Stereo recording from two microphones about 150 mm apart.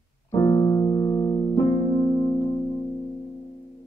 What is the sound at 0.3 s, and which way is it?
Keyboard, 20° left (ahead or behind).